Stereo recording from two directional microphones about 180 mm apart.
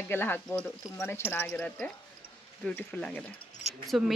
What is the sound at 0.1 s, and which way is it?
Speech, 10° left (ahead or behind).